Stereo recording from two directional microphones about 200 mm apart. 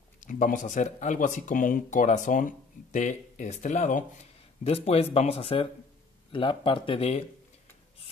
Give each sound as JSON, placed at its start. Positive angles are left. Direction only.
{"t": 0.2, "sound": "speech", "side_deg": 40}